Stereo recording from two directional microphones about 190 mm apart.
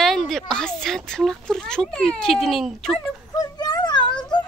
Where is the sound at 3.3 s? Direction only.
20° left (ahead or behind).